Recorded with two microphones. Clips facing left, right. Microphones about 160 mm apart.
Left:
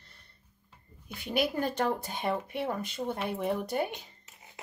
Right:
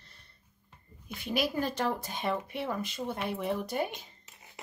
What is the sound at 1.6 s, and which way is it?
Speech, 50° left (ahead or behind).